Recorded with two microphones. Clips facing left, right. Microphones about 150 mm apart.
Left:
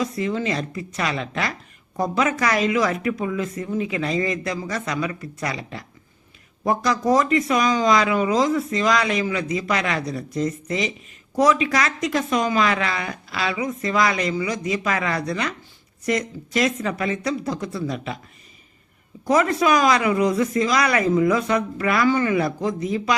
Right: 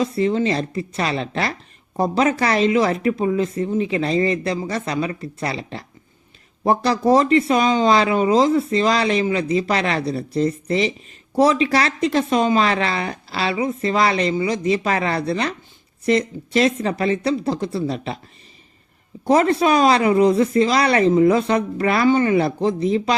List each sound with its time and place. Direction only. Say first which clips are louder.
0.0 s a woman's voice: right 5 dB; 30° right (ahead or behind)
19.2 s speech: right 3 dB; 30° right (ahead or behind)